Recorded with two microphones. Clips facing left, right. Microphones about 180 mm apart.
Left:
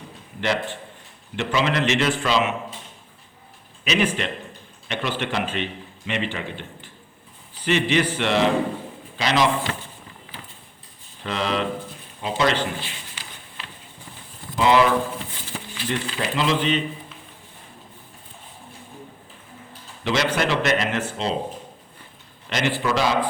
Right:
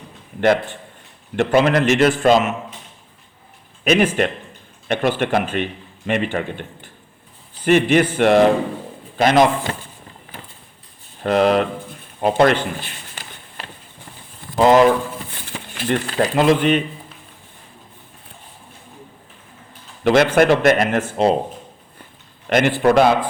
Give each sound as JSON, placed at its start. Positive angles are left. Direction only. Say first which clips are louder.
{"t": 1.4, "sound": "speech", "louder": "right 7 dB", "side_deg": -50}
{"t": 3.8, "sound": "speech", "louder": "right 7 dB", "side_deg": -50}
{"t": 11.2, "sound": "speech", "louder": "right 10 dB", "side_deg": -55}
{"t": 12.2, "sound": "a sound", "louder": "right 7 dB", "side_deg": -55}
{"t": 14.5, "sound": "speech", "louder": "right 6 dB", "side_deg": -45}
{"t": 15.4, "sound": "speech", "louder": "right 3 dB", "side_deg": -60}
{"t": 20.1, "sound": "speech", "louder": "right 9 dB", "side_deg": -55}
{"t": 22.4, "sound": "a man's voice", "louder": "right 8 dB", "side_deg": -55}